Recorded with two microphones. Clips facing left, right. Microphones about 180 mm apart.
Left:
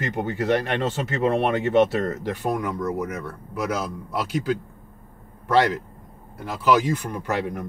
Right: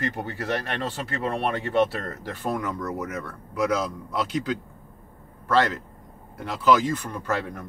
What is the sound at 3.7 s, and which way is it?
Speech, 5° left (ahead or behind).